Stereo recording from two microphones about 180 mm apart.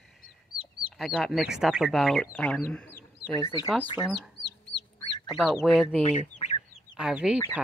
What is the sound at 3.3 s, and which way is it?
Speech, 25° left (ahead or behind).